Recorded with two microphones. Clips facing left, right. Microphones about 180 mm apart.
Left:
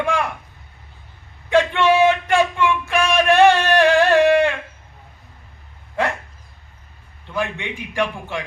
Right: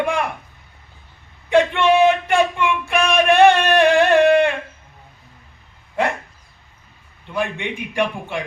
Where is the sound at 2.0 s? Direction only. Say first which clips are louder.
Right 1 dB; 15° right (ahead or behind).